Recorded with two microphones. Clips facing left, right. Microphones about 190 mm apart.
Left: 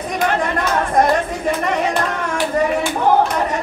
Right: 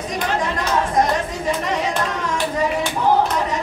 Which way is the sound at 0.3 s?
55° left (ahead or behind).